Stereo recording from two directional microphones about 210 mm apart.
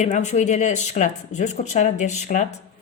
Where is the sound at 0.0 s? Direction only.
35° left (ahead or behind).